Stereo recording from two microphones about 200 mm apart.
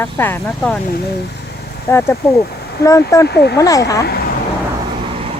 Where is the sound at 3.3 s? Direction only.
55° left (ahead or behind).